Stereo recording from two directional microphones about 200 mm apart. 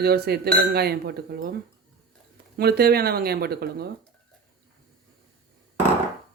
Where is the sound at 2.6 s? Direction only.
50° right (ahead or behind).